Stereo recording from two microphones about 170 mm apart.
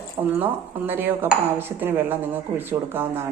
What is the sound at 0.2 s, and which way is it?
Dishes, 15° right (ahead or behind).